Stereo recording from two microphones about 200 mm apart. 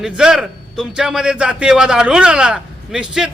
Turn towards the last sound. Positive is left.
turn(degrees=-5)  # may be behind; listen again after turning